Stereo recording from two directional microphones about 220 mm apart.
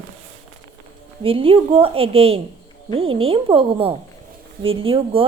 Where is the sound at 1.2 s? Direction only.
25° right (ahead or behind).